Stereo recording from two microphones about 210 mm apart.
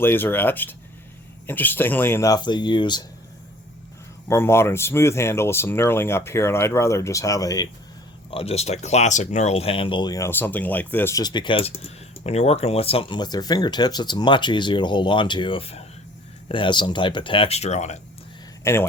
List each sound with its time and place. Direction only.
0.0 s speech: 10° left (ahead or behind)
4.3 s speech: 10° left (ahead or behind)
8.3 s speech: 25° left (ahead or behind)
18.6 s speech: 10° left (ahead or behind)